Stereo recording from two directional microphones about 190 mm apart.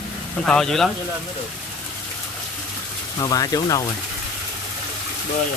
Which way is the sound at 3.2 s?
20° left (ahead or behind).